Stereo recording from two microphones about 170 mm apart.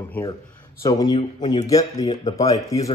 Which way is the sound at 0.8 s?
20° left (ahead or behind).